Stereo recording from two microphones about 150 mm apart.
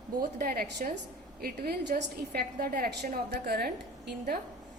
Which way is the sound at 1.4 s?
85° right.